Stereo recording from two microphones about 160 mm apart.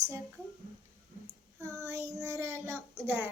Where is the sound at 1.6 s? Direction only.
20° right (ahead or behind).